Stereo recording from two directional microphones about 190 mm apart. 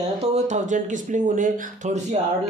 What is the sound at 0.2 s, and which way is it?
Speech, 35° right (ahead or behind).